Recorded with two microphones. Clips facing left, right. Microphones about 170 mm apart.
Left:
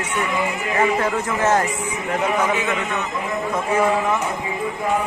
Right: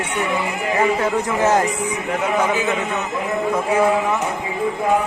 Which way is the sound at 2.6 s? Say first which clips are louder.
Right 2 dB; 30° right (ahead or behind).